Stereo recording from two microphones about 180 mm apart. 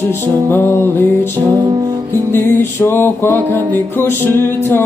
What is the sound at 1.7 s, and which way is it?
Music, 20° right (ahead or behind).